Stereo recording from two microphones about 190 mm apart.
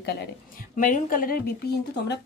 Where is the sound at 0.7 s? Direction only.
45° left (ahead or behind).